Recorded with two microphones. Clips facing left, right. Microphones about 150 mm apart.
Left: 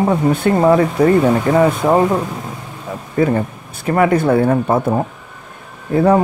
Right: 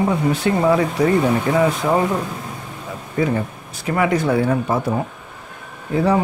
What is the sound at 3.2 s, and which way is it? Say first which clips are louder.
Speech: left 4 dB; 50° left (ahead or behind).